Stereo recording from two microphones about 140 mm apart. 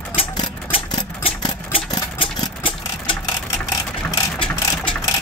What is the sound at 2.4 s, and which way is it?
Vehicle, 40° left (ahead or behind).